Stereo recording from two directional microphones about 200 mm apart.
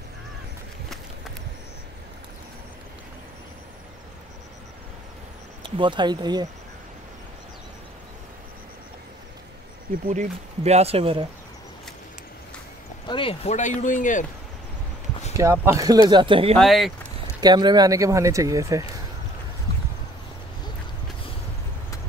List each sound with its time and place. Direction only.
5.6 s speech: 25° right (ahead or behind)
10.0 s speech: 35° right (ahead or behind)
13.0 s speech: 25° left (ahead or behind)
15.3 s speech: 15° right (ahead or behind)
16.5 s speech: centre (ahead or behind)
17.4 s speech: 20° right (ahead or behind)